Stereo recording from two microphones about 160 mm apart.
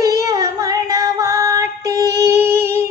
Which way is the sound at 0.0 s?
20° right (ahead or behind).